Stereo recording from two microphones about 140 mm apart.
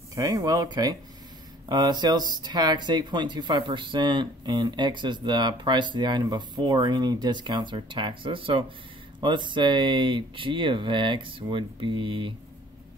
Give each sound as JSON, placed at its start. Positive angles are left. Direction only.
{"t": 0.1, "sound": "speech", "side_deg": -25}